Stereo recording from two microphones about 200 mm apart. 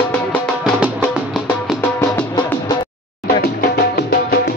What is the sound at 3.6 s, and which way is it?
Music, 55° left (ahead or behind).